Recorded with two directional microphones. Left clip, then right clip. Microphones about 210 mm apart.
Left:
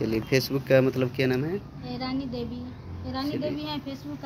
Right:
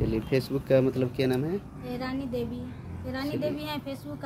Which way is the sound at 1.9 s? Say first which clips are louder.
Left 1 dB; 20° right (ahead or behind).